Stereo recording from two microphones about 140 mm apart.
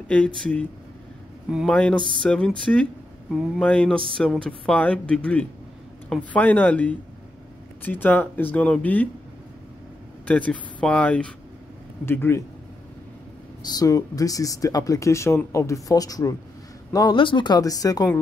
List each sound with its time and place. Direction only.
0.4 s speech: 10° left (ahead or behind)
1.7 s speech: 10° left (ahead or behind)
10.2 s speech: 10° left (ahead or behind)
13.6 s speech: 30° left (ahead or behind)